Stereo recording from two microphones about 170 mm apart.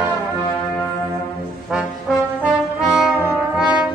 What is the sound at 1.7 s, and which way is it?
Trombone, centre (ahead or behind).